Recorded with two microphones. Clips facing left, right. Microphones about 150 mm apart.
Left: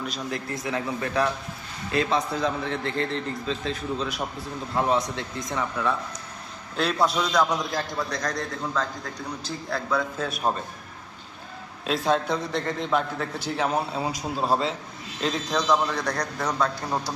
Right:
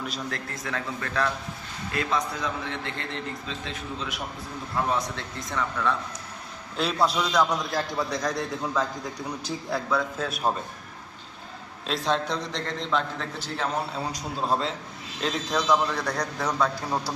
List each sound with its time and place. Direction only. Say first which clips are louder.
0.3 s a man's voice: left 4 dB; 15° left (ahead or behind)
1.9 s a man's voice: left 4 dB; 25° left (ahead or behind)
4.9 s a man's voice: left 3 dB; 20° left (ahead or behind)
6.7 s a man's voice: left 1 dB; centre (ahead or behind)
9.9 s a man's voice: left 2 dB; centre (ahead or behind)
11.9 s a man's voice: left 3 dB; 5° left (ahead or behind)